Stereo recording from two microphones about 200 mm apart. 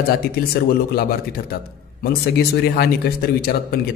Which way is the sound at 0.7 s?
50° left (ahead or behind).